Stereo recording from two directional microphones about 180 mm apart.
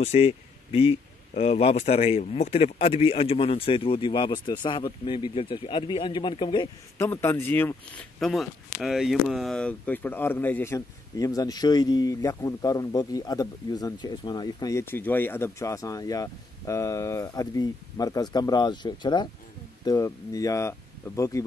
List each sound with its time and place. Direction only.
0.0 s speech: 35° left (ahead or behind)
7.0 s speech: 15° left (ahead or behind)